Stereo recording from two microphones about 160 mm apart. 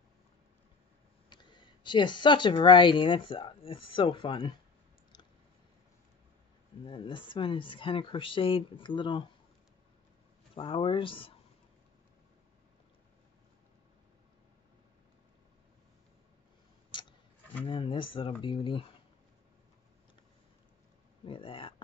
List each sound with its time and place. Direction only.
1.3 s speech: 30° left (ahead or behind)
6.8 s speech: 30° left (ahead or behind)
10.5 s speech: 35° left (ahead or behind)
17.6 s speech: 35° left (ahead or behind)
21.3 s speech: 35° left (ahead or behind)